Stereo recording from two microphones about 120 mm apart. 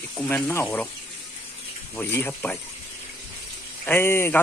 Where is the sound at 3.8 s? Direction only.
20° left (ahead or behind).